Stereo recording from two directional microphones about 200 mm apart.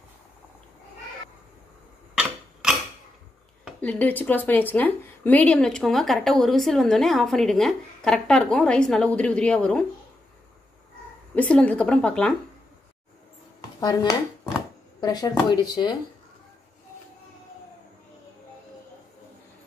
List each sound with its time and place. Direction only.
3.6 s a woman's voice: 5° left (ahead or behind)
11.3 s a woman's voice: 5° left (ahead or behind)
13.6 s dishes: 20° left (ahead or behind)
15.0 s speech: 20° left (ahead or behind)